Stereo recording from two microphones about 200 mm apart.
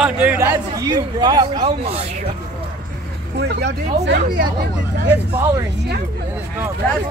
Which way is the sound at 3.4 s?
55° right (ahead or behind).